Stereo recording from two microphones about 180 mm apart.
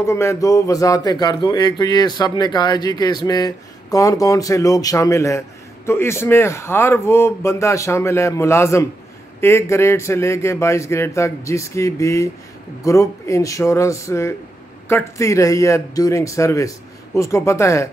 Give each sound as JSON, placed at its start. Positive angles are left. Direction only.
{"t": 0.0, "sound": "speech", "side_deg": 15}